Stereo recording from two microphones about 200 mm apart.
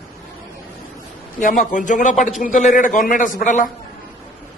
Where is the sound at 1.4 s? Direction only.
40° left (ahead or behind).